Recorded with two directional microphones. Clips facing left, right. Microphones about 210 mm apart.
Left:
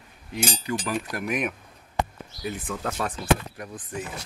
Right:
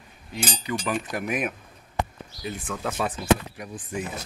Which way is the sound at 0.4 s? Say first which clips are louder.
Left 1 dB; centre (ahead or behind).